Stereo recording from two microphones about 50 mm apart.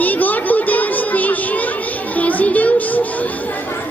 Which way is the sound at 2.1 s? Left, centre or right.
Left.